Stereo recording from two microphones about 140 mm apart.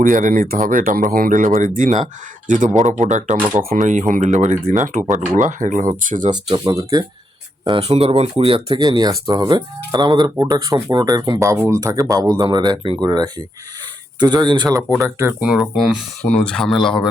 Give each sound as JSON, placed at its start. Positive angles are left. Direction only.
{"t": 0.0, "sound": "speech", "side_deg": -70}
{"t": 3.3, "sound": "speech", "side_deg": -10}
{"t": 3.6, "sound": "speech", "side_deg": -80}
{"t": 6.3, "sound": "speech", "side_deg": -30}
{"t": 7.6, "sound": "speech", "side_deg": -40}
{"t": 8.9, "sound": "speech", "side_deg": -25}
{"t": 14.7, "sound": "speech", "side_deg": -20}
{"t": 15.2, "sound": "speech", "side_deg": -10}